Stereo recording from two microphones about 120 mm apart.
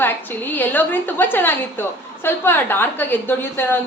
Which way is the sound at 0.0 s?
15° left (ahead or behind).